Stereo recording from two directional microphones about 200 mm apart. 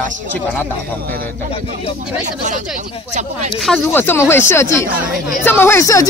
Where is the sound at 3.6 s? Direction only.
5° left (ahead or behind).